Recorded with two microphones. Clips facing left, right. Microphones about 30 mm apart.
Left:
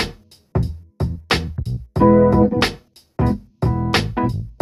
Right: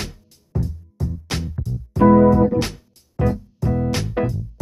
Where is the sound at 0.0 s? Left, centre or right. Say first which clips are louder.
Left 8 dB; left.